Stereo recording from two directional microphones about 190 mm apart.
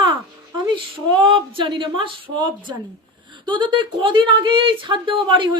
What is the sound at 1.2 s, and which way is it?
Speech, 25° right (ahead or behind).